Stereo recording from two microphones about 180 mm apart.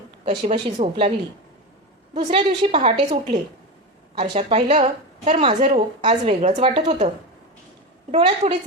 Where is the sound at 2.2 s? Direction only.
30° right (ahead or behind).